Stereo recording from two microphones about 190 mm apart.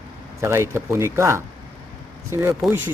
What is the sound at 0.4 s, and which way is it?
Speech, 15° right (ahead or behind).